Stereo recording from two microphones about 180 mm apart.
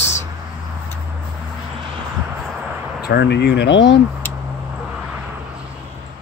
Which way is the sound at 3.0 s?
70° left (ahead or behind).